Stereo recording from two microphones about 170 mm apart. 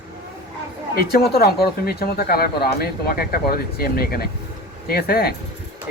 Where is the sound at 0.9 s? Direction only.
65° left (ahead or behind).